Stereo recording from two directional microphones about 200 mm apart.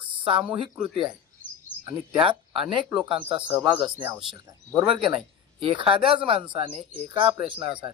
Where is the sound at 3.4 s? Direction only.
10° right (ahead or behind).